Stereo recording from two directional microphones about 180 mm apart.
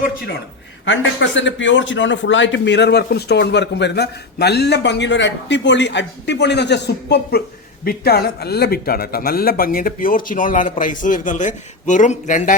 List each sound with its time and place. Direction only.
0.9 s a man's voice: 90° left; by 12.5 s 40° left (ahead or behind)